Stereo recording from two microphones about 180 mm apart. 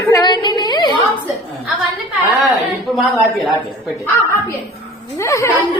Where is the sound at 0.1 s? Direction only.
20° left (ahead or behind).